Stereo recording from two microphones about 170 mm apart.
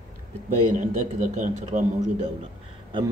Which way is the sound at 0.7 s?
45° right (ahead or behind).